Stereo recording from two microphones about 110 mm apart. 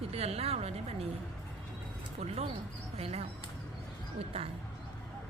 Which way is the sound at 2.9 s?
65° right (ahead or behind).